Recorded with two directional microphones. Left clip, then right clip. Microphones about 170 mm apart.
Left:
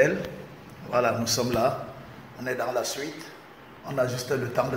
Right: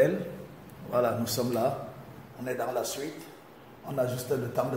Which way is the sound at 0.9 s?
5° right (ahead or behind).